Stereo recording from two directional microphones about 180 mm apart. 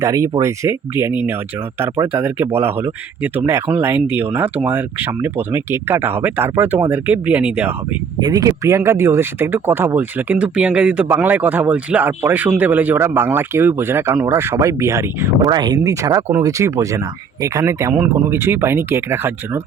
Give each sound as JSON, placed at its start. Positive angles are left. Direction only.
{"t": 0.0, "sound": "speech", "side_deg": -20}
{"t": 8.2, "sound": "speech", "side_deg": -20}